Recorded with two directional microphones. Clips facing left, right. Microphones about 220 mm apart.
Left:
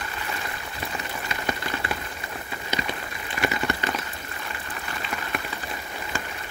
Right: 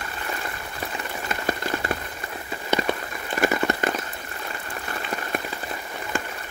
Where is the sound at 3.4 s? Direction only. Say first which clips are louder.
Right 4 dB; 45° right (ahead or behind).